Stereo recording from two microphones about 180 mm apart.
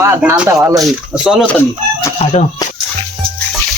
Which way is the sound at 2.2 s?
35° left (ahead or behind).